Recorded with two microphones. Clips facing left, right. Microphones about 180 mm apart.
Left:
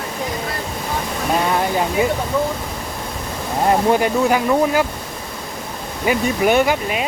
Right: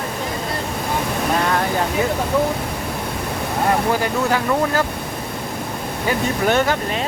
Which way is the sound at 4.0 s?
15° left (ahead or behind).